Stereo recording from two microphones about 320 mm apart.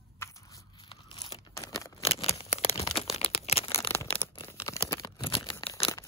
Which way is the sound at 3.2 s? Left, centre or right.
Centre.